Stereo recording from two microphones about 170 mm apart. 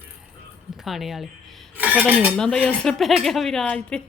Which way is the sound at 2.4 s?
5° left (ahead or behind).